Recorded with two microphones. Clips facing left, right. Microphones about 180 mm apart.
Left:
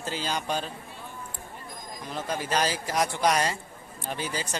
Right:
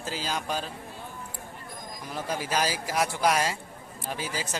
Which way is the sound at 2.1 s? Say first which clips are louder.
Left 1 dB; 10° right (ahead or behind).